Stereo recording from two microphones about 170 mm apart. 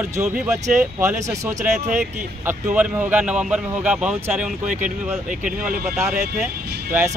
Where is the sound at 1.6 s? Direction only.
45° right (ahead or behind).